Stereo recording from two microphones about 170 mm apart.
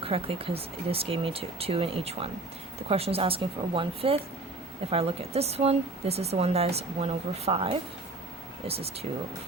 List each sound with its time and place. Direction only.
0.0 s speech: 35° right (ahead or behind)